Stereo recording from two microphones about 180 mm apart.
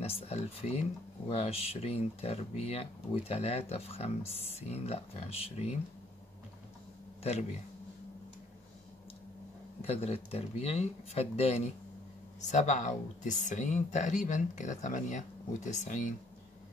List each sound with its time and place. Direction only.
0.0 s speech: 35° left (ahead or behind)
7.2 s speech: 35° left (ahead or behind)
9.8 s speech: 35° left (ahead or behind)